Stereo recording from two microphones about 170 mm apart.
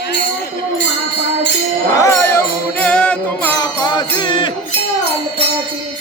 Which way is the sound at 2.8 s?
5° left (ahead or behind).